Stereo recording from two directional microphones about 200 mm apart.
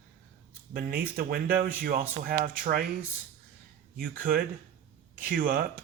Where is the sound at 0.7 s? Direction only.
45° right (ahead or behind).